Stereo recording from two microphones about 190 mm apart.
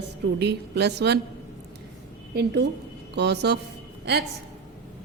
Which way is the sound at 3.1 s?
60° right (ahead or behind).